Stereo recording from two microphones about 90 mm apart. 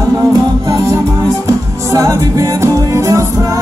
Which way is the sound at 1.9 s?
35° right (ahead or behind).